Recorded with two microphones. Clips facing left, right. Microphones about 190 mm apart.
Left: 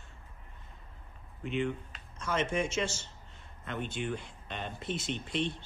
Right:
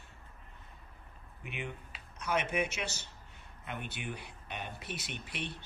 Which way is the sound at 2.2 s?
65° right (ahead or behind).